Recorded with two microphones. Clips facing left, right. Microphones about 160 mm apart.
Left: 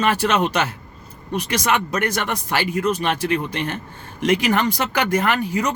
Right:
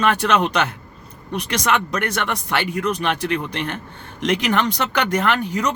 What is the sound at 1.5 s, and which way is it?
Speech, 10° left (ahead or behind).